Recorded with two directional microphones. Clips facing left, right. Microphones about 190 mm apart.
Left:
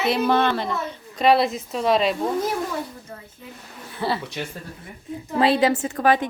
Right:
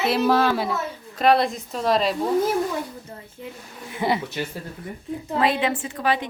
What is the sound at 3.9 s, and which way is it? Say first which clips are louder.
Speech: right 2 dB; 15° right (ahead or behind).